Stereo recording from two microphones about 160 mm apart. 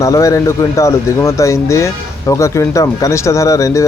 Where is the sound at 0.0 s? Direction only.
20° left (ahead or behind).